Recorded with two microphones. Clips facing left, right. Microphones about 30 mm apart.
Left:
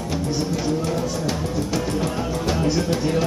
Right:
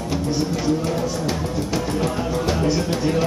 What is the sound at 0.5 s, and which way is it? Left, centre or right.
Music, centre.